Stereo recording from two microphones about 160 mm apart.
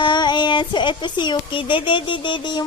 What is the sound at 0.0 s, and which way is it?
Speech, 30° left (ahead or behind).